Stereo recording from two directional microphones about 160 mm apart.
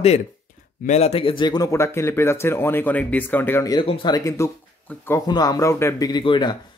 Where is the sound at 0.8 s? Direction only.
40° left (ahead or behind); by 3.7 s 15° left (ahead or behind).